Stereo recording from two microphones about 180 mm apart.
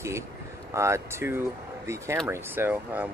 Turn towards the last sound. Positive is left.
turn(degrees=-10)  # may be behind; listen again after turning